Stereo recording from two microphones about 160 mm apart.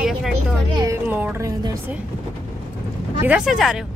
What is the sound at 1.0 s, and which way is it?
Speech, 10° right (ahead or behind).